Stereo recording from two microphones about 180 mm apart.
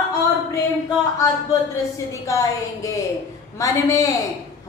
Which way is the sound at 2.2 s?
15° left (ahead or behind).